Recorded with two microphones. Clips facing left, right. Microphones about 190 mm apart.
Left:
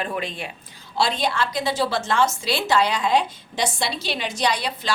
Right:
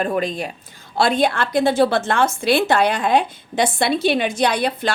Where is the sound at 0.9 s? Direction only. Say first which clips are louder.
Right 5 dB; 55° right (ahead or behind).